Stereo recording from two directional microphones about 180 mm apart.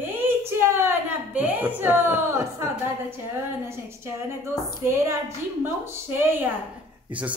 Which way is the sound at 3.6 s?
15° right (ahead or behind).